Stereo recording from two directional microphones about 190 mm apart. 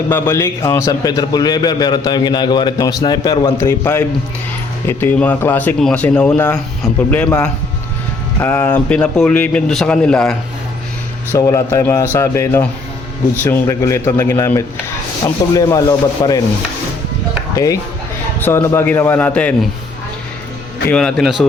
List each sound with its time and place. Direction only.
0.1 s a man's voice: 15° left (ahead or behind)
11.3 s a man's voice: 15° left (ahead or behind)
17.5 s speech: 20° left (ahead or behind)
20.9 s a man's voice: centre (ahead or behind)